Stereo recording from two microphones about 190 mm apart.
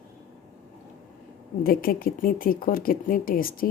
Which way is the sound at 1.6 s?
50° left (ahead or behind).